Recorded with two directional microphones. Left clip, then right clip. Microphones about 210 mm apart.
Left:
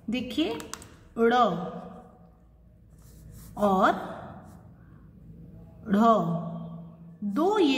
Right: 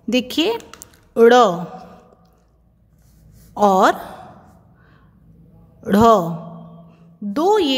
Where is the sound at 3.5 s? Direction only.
50° right (ahead or behind).